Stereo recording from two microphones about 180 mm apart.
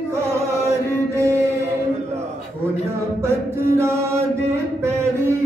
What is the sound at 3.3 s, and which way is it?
Chant, 15° right (ahead or behind).